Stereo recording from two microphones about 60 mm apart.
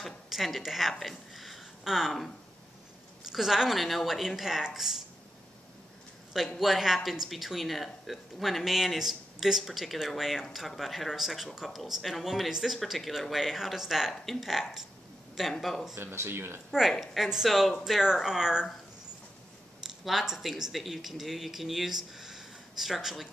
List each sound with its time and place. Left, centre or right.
0.0 s a woman's voice: centre
3.3 s speech: centre
6.6 s speech: centre
14.1 s speech: centre
16.0 s speech: right
17.0 s speech: centre
20.1 s speech: centre